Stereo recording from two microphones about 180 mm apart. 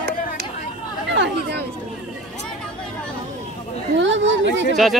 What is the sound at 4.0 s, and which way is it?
Speech, 90° right.